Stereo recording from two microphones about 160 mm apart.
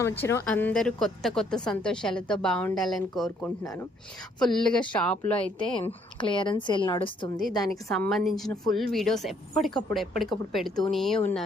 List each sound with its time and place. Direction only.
0.0 s a woman's voice: 15° left (ahead or behind)
5.4 s speech: 30° left (ahead or behind)
7.6 s a woman's voice: centre (ahead or behind)